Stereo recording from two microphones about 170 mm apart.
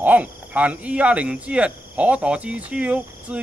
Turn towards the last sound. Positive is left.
turn(degrees=-10)  # may be behind; listen again after turning